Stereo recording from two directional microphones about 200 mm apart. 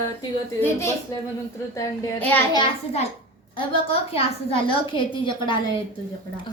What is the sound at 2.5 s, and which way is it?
A woman's voice, 25° left (ahead or behind).